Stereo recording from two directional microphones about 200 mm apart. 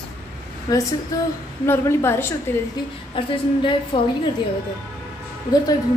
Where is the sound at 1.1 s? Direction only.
15° left (ahead or behind).